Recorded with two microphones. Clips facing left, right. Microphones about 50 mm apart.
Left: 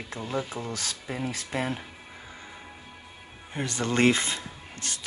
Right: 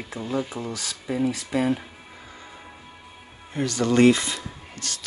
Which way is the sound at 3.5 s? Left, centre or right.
Left.